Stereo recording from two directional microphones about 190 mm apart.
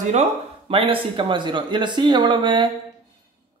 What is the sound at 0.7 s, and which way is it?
Speech, 30° right (ahead or behind).